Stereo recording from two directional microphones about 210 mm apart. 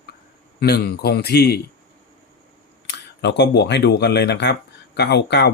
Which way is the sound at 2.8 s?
55° left (ahead or behind).